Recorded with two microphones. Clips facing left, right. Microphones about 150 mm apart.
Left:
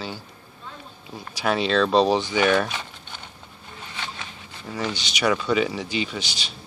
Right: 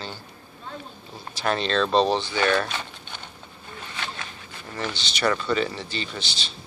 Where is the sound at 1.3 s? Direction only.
5° left (ahead or behind).